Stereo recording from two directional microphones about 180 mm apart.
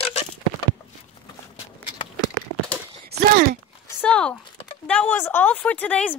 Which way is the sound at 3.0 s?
55° right (ahead or behind).